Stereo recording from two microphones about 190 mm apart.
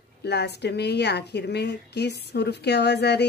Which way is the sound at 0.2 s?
60° left (ahead or behind).